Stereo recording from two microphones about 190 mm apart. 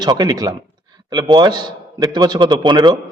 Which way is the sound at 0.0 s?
20° right (ahead or behind).